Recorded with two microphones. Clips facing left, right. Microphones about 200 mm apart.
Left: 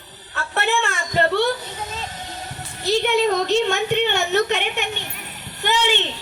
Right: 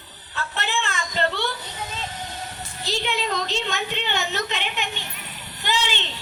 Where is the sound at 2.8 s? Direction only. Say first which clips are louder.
Left 9 dB; 50° left (ahead or behind).